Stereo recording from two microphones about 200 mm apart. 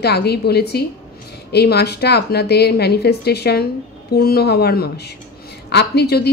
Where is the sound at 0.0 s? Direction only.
55° left (ahead or behind).